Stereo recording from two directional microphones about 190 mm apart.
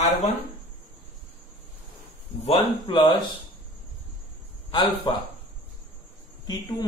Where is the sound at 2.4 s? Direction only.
30° left (ahead or behind).